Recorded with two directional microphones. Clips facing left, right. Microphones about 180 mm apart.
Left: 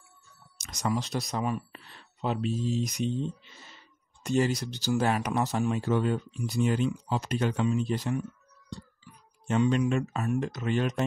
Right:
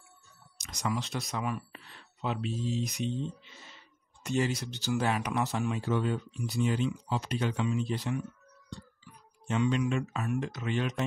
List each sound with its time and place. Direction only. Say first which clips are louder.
0.6 s speech: left 3 dB; 40° left (ahead or behind)
4.2 s speech: left 4 dB; 35° left (ahead or behind)
9.5 s speech: left 3 dB; 45° left (ahead or behind)